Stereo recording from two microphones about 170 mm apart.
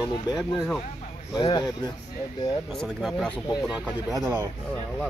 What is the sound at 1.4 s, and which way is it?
Speech, 25° left (ahead or behind).